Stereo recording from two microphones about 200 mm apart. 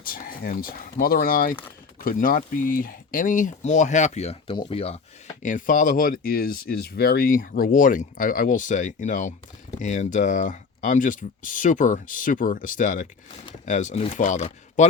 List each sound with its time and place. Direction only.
0.0 s speech: 45° left (ahead or behind); by 4.9 s 30° left (ahead or behind)
5.4 s speech: 40° left (ahead or behind)